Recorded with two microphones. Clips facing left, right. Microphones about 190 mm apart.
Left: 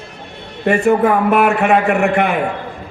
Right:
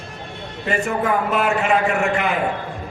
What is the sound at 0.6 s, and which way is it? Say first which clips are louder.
A man's voice: left 9 dB; 60° left (ahead or behind).